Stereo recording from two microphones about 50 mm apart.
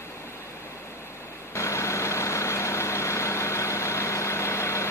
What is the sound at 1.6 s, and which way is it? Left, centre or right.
Vehicle, left.